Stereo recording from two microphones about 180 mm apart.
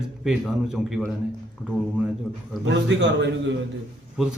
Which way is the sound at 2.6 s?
85° right.